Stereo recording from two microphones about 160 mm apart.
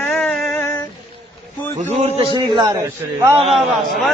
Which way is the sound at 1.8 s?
40° right (ahead or behind).